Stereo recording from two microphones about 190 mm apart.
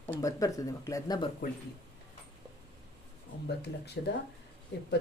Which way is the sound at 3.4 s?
60° left (ahead or behind).